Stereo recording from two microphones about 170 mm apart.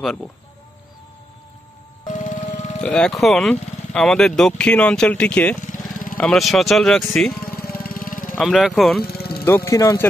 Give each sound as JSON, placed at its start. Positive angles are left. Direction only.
{"t": 0.0, "sound": "speech", "side_deg": 5}
{"t": 2.0, "sound": "music", "side_deg": 45}
{"t": 2.8, "sound": "speech", "side_deg": 5}
{"t": 7.4, "sound": "vehicle", "side_deg": 60}
{"t": 8.4, "sound": "speech", "side_deg": 0}
{"t": 9.0, "sound": "music", "side_deg": 65}
{"t": 9.7, "sound": "speech", "side_deg": 20}